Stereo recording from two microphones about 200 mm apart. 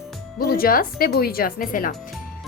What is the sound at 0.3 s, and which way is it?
A woman's voice, 50° left (ahead or behind).